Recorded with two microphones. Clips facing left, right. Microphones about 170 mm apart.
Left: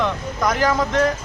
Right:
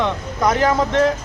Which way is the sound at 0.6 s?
25° right (ahead or behind).